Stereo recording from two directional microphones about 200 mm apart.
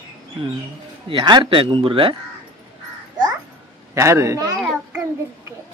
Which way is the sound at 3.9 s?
15° right (ahead or behind).